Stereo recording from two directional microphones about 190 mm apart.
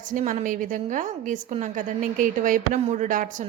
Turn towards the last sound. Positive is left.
turn(degrees=-45)  # may be behind; listen again after turning